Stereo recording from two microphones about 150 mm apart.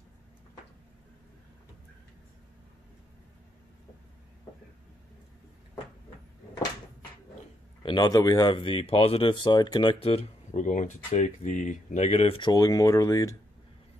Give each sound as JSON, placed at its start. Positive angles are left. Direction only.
{"t": 7.8, "sound": "speech", "side_deg": 30}
{"t": 10.6, "sound": "speech", "side_deg": 55}
{"t": 12.4, "sound": "speech", "side_deg": 25}